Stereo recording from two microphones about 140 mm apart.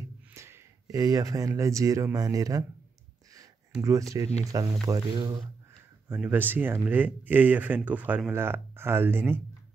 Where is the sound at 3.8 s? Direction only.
25° right (ahead or behind).